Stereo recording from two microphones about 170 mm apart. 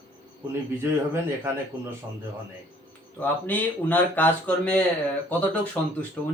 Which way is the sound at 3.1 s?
10° left (ahead or behind).